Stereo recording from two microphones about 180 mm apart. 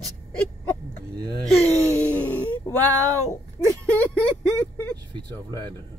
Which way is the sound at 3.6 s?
15° right (ahead or behind).